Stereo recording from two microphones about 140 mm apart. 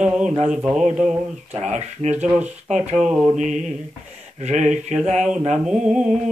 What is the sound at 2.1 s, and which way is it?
Mantra, 10° right (ahead or behind).